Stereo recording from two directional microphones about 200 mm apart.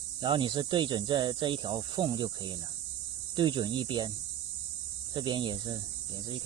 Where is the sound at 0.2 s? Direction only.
25° right (ahead or behind).